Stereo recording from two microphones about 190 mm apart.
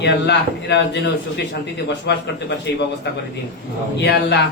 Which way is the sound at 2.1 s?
65° left (ahead or behind).